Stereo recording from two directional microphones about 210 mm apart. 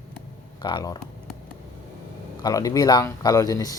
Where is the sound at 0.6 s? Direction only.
20° left (ahead or behind).